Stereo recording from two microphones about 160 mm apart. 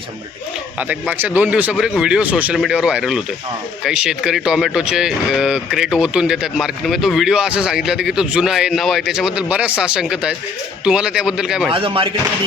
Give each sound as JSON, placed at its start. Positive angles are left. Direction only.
{"t": 0.8, "sound": "speech", "side_deg": -10}
{"t": 11.7, "sound": "speech", "side_deg": -35}